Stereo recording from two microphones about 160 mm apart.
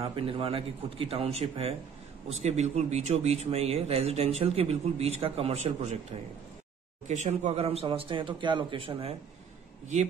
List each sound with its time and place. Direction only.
0.0 s speech: 35° right (ahead or behind)
7.1 s speech: 45° right (ahead or behind)